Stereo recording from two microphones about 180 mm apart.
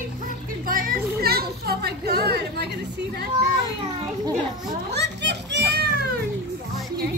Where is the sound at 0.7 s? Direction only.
55° right (ahead or behind).